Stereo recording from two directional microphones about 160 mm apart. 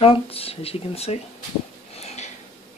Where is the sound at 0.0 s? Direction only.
35° left (ahead or behind).